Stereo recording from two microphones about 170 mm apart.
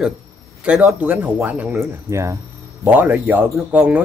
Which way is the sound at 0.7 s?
5° right (ahead or behind).